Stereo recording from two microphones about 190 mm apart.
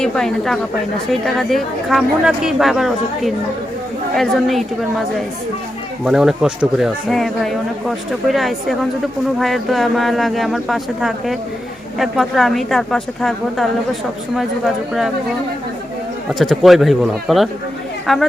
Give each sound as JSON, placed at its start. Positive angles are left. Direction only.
{"t": 0.0, "sound": "speech", "side_deg": 0}
{"t": 6.1, "sound": "speech", "side_deg": -5}
{"t": 16.4, "sound": "speech", "side_deg": 0}